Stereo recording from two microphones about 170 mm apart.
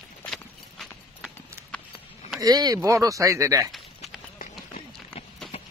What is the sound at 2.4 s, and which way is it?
Speech, 25° right (ahead or behind).